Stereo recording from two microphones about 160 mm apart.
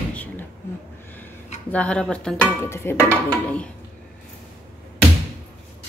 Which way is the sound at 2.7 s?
15° left (ahead or behind).